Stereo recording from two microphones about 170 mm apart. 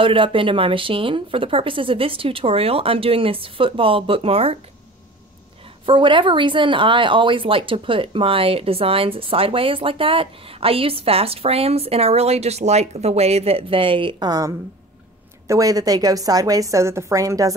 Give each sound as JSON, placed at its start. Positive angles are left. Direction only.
{"t": 0.0, "sound": "speech", "side_deg": -30}
{"t": 5.9, "sound": "a woman's voice", "side_deg": -30}